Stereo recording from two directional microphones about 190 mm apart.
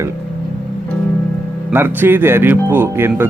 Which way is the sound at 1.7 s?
10° right (ahead or behind).